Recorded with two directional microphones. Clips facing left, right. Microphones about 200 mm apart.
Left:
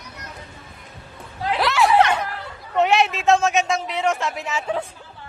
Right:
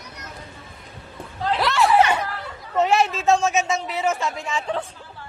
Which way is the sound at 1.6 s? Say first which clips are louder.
Left 1 dB; centre (ahead or behind).